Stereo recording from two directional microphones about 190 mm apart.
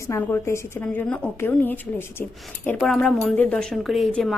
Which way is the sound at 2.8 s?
Centre (ahead or behind).